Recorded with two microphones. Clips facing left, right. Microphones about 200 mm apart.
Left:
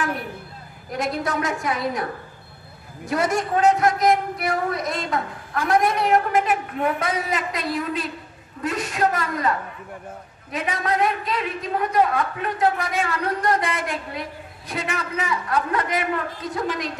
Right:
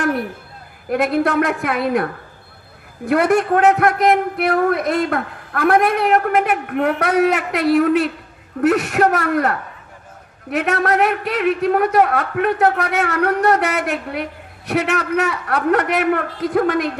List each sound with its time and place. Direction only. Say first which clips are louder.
0.8 s a man's voice: right 8 dB; 60° right (ahead or behind)
3.1 s a man's voice: right 7 dB; 60° right (ahead or behind)